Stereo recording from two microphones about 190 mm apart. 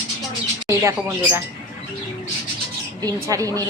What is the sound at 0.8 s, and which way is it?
Speech, 15° right (ahead or behind).